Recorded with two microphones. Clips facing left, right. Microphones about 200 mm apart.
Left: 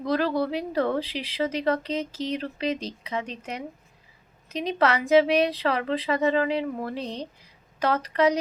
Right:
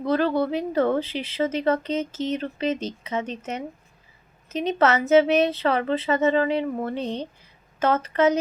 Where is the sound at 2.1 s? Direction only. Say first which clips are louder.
Right 3 dB; 35° left (ahead or behind).